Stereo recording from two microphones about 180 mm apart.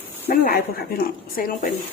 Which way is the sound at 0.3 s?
55° left (ahead or behind).